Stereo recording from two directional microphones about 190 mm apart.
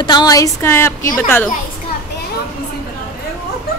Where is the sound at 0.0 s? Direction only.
20° left (ahead or behind).